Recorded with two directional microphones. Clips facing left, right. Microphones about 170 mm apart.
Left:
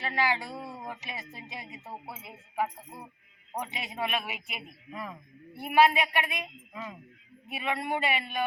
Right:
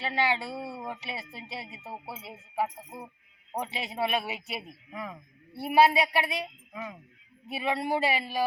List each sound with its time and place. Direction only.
0.0 s speech: 25° right (ahead or behind)
2.0 s speech: 10° right (ahead or behind)
3.6 s speech: 30° right (ahead or behind)
7.5 s speech: 30° right (ahead or behind)